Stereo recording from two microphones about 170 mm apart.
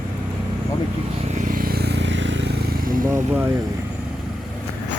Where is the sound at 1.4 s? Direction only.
55° right (ahead or behind); by 2.4 s 90° right.